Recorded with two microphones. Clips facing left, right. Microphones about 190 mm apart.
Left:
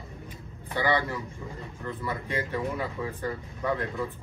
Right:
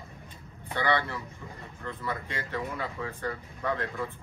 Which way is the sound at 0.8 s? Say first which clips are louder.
Left 2 dB; 15° left (ahead or behind).